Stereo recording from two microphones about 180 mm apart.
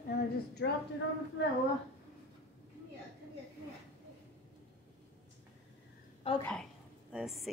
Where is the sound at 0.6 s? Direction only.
90° left.